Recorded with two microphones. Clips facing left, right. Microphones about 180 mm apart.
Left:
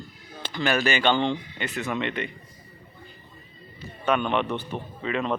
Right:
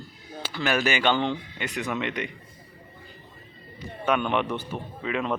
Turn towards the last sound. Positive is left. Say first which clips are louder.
# left 1 dB
turn(degrees=-10)  # may be behind; listen again after turning